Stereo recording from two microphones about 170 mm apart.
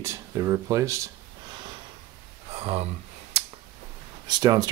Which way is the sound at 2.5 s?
35° right (ahead or behind).